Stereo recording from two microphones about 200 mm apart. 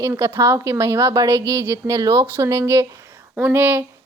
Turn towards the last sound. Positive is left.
turn(degrees=-10)  # may be behind; listen again after turning